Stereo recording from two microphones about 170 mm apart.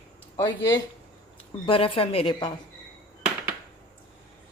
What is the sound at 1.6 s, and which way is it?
Speech, 35° left (ahead or behind).